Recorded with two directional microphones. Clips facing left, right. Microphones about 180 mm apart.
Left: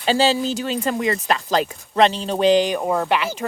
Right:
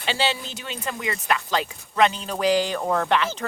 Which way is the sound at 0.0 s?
40° left (ahead or behind).